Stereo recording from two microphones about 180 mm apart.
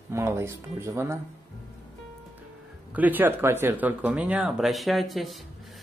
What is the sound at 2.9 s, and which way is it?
Speech, 10° right (ahead or behind).